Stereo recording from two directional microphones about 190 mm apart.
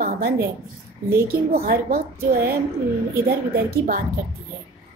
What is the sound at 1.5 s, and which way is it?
A woman's voice, 50° right (ahead or behind).